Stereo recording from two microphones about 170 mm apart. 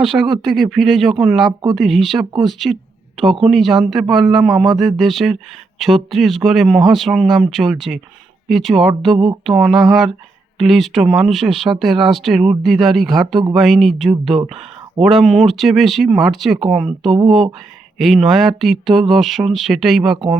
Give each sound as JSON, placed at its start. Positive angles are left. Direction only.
{"t": 0.0, "sound": "speech", "side_deg": 0}
{"t": 9.1, "sound": "a sound", "side_deg": -30}
{"t": 9.5, "sound": "speech", "side_deg": 0}
{"t": 17.1, "sound": "speech", "side_deg": -30}
{"t": 17.9, "sound": "speech", "side_deg": 0}